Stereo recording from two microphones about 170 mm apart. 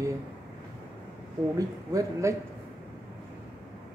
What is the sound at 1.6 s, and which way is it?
Speech, 20° right (ahead or behind).